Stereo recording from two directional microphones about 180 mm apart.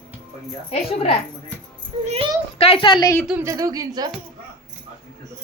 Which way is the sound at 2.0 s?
30° right (ahead or behind).